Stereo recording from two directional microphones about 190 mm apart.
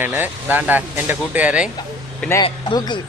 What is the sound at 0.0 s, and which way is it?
Speech, 10° right (ahead or behind).